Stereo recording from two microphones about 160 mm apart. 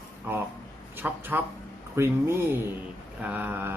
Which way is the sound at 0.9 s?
15° right (ahead or behind).